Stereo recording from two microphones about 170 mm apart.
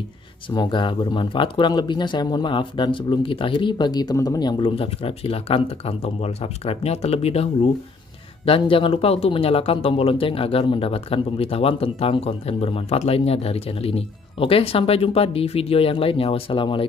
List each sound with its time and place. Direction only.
0.5 s speech: 25° left (ahead or behind)
8.5 s speech: 30° left (ahead or behind)